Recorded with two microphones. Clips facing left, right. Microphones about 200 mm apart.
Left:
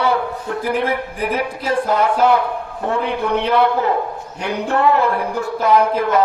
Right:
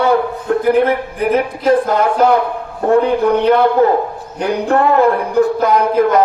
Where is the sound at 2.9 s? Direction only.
35° right (ahead or behind).